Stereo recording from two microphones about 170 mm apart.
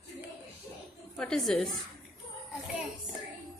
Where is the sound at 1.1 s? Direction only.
5° left (ahead or behind).